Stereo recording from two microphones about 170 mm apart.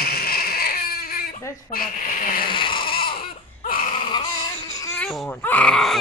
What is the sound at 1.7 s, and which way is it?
Speech, 55° left (ahead or behind).